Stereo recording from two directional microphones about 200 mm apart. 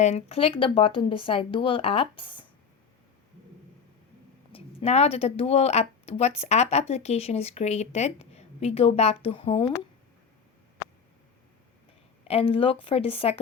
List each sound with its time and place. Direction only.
0.0 s speech: 30° left (ahead or behind)
4.5 s speech: 30° left (ahead or behind)
12.3 s speech: 30° left (ahead or behind)